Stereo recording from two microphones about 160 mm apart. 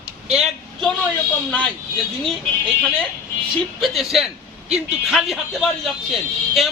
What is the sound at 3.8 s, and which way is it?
Speech, centre (ahead or behind).